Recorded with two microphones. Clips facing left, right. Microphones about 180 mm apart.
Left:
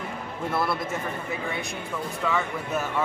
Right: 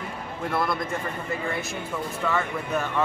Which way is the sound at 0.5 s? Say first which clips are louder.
Even; 5° left (ahead or behind).